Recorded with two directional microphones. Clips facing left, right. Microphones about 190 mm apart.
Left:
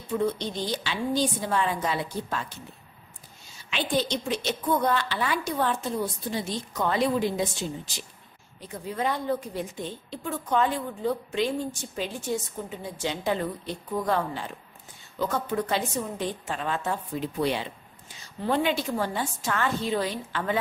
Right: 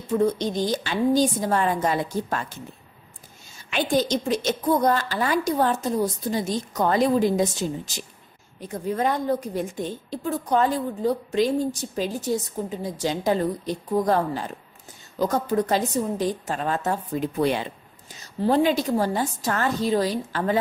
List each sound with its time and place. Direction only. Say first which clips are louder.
0.2 s a woman's voice: right 6 dB; 40° right (ahead or behind)
3.7 s a woman's voice: right 5 dB; 45° right (ahead or behind)
18.4 s a woman's voice: right 5 dB; 40° right (ahead or behind)